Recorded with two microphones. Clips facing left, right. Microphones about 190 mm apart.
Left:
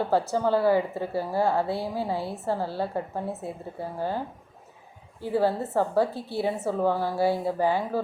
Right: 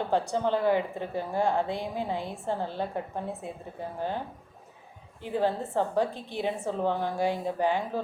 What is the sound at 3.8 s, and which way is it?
Speech, 10° left (ahead or behind).